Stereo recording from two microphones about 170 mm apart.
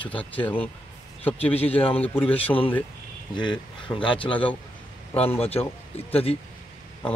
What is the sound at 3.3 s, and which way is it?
Speech, 25° left (ahead or behind).